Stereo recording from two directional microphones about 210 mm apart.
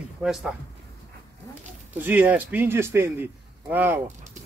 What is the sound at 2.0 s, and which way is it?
A man's voice, 10° right (ahead or behind).